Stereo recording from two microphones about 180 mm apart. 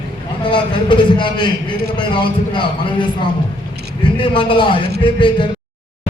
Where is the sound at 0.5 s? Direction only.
25° left (ahead or behind).